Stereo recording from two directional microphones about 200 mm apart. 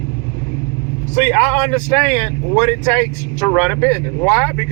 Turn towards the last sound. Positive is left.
turn(degrees=10)  # may be behind; listen again after turning